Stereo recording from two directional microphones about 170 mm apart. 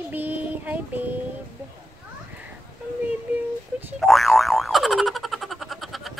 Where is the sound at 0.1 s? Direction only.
10° right (ahead or behind).